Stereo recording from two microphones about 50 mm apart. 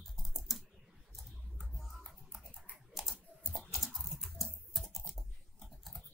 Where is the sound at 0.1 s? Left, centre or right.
Centre.